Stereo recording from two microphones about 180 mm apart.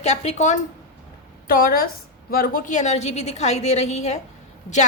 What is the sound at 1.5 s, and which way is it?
A woman's voice, 50° left (ahead or behind).